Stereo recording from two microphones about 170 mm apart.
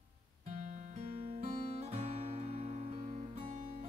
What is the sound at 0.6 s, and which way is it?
Music, 50° right (ahead or behind).